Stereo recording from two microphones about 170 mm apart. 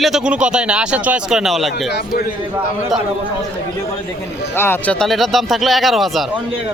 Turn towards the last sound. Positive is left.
turn(degrees=0)  # may be behind; listen again after turning